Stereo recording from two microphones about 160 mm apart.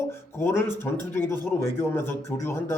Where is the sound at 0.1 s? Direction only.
15° left (ahead or behind).